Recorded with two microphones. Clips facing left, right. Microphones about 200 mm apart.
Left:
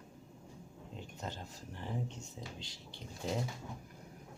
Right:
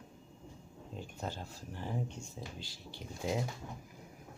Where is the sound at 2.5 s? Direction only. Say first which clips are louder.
Right 2 dB; 25° left (ahead or behind).